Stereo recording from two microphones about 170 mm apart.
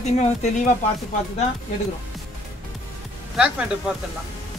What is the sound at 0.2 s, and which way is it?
Speech, 45° left (ahead or behind).